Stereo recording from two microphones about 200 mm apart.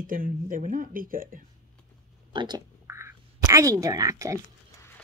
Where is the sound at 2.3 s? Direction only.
20° right (ahead or behind).